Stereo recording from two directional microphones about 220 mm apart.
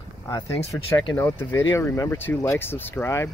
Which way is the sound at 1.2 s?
10° left (ahead or behind).